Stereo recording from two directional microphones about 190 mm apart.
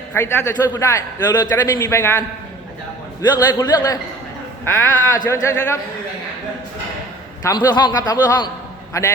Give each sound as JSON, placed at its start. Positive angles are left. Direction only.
{"t": 0.1, "sound": "a man's voice", "side_deg": 10}
{"t": 7.4, "sound": "a man's voice", "side_deg": 20}